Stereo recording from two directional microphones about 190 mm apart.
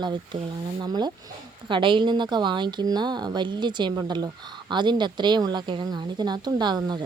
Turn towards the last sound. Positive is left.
turn(degrees=-25)  # may be behind; listen again after turning